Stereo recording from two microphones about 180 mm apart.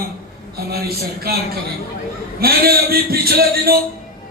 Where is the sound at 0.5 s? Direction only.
60° right (ahead or behind).